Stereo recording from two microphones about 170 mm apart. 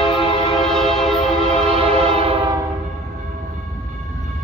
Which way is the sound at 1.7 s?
35° right (ahead or behind).